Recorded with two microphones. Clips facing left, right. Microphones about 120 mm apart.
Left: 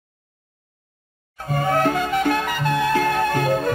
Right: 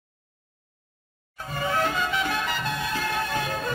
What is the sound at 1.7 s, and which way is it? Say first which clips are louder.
Music: left 6 dB; 50° left (ahead or behind).